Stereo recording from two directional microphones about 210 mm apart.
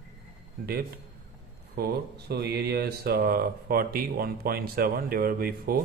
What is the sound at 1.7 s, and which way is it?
Speech, 50° right (ahead or behind).